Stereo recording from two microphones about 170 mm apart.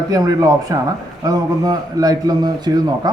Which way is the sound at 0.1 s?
20° right (ahead or behind).